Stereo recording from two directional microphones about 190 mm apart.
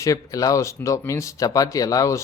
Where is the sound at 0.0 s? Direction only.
15° left (ahead or behind).